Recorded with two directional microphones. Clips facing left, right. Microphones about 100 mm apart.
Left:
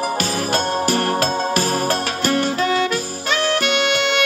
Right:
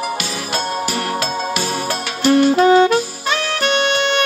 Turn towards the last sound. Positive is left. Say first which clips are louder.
# right 2 dB
turn(degrees=-45)  # may be behind; listen again after turning